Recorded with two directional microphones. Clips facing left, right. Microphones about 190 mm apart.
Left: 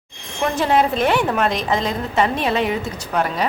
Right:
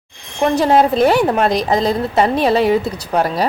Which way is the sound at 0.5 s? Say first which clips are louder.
Right 5 dB; 40° right (ahead or behind).